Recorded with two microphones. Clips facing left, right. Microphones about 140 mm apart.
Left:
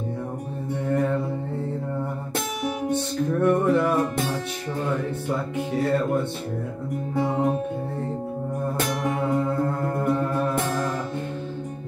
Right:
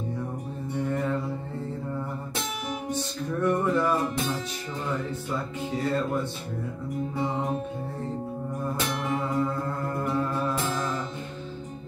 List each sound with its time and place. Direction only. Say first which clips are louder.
0.7 s mantra: left 4 dB; 55° left (ahead or behind)
2.3 s music: left 6 dB; 55° left (ahead or behind)
5.8 s speech: left 4 dB; 60° left (ahead or behind)
8.7 s music: left 3 dB; 50° left (ahead or behind)